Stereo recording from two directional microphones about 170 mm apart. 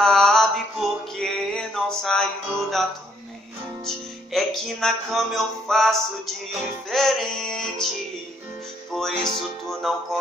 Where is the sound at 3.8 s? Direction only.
Centre (ahead or behind).